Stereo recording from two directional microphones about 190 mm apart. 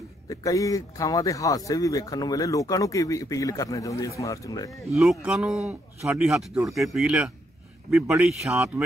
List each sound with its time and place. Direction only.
0.3 s speech: 15° left (ahead or behind)
4.6 s speech: centre (ahead or behind)